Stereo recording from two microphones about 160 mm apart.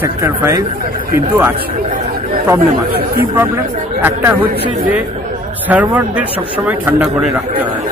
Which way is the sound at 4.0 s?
15° right (ahead or behind).